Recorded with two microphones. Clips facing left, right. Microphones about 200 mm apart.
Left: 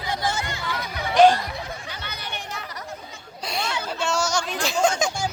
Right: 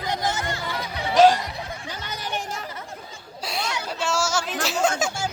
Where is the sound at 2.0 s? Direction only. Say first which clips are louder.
Right 3 dB; 45° right (ahead or behind).